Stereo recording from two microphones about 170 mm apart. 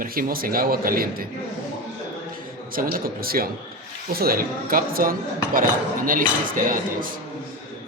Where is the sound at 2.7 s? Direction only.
60° right (ahead or behind).